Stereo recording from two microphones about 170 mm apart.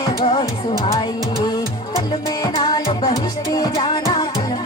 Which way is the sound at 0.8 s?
35° left (ahead or behind).